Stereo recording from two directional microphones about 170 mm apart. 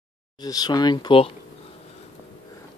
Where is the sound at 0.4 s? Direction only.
25° left (ahead or behind).